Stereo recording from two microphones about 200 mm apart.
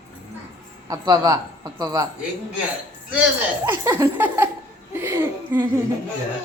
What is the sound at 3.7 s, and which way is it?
Speech, 15° right (ahead or behind).